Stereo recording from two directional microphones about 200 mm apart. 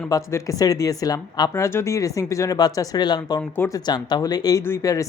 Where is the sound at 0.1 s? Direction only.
15° left (ahead or behind).